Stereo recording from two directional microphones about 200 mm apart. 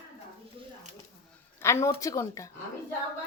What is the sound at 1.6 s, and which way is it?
Speech, 15° left (ahead or behind).